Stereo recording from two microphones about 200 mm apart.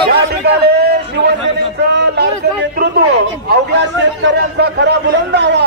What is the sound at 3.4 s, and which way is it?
A man's voice, 60° right (ahead or behind).